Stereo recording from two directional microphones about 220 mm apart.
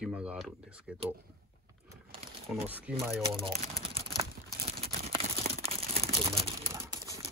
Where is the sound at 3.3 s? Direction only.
25° right (ahead or behind).